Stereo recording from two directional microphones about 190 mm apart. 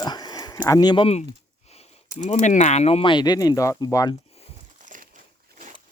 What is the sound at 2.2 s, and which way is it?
Speech, 40° left (ahead or behind).